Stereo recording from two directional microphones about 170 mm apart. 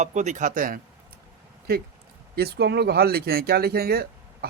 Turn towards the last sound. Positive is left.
turn(degrees=-65)  # may be behind; listen again after turning